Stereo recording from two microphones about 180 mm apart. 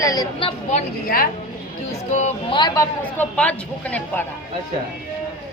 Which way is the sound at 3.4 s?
10° left (ahead or behind).